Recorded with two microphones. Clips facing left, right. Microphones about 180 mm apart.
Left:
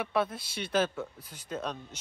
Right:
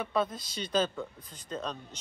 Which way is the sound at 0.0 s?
5° left (ahead or behind).